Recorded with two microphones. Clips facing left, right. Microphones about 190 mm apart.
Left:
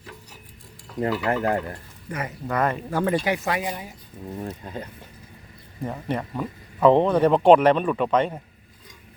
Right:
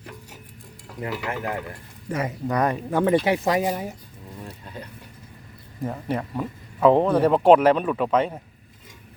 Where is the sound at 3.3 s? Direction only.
40° right (ahead or behind).